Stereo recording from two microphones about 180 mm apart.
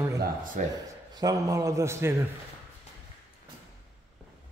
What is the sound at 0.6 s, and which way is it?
Speech, 45° right (ahead or behind).